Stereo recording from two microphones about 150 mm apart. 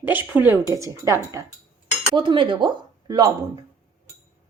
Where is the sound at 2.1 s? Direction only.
35° right (ahead or behind).